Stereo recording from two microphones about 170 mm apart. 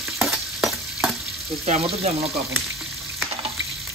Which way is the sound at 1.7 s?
35° right (ahead or behind).